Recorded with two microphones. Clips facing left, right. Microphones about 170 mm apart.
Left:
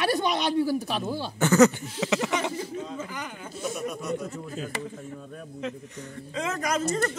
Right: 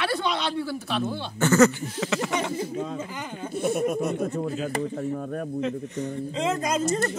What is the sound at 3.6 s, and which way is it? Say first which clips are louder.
Speech: right 6 dB; 55° right (ahead or behind).